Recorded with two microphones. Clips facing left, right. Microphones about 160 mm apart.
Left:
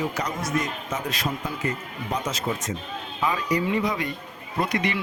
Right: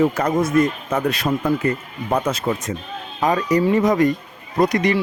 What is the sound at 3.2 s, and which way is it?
Speech, 45° right (ahead or behind).